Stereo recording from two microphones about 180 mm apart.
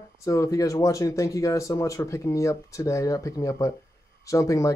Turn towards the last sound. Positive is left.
turn(degrees=15)  # may be behind; listen again after turning